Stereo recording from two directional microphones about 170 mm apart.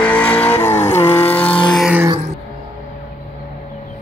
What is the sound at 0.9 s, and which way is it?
Vehicle, 40° left (ahead or behind).